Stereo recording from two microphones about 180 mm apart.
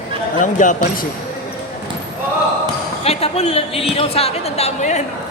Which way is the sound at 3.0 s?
35° left (ahead or behind).